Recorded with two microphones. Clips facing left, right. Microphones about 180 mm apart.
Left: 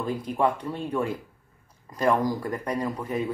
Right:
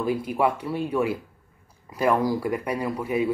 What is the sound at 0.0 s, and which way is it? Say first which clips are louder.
Speech: right 2 dB; 10° right (ahead or behind).